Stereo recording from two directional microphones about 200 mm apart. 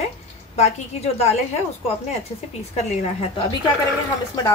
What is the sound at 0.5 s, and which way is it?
Speech, 30° left (ahead or behind).